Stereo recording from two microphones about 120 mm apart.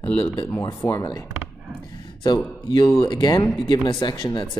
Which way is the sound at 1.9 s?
40° left (ahead or behind).